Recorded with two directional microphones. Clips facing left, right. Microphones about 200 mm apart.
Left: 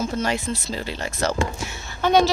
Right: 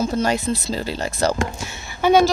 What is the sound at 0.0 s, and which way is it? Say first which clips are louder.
Speech: right 4 dB; 35° right (ahead or behind).